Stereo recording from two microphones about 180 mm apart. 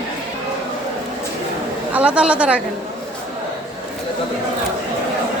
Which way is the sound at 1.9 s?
5° right (ahead or behind).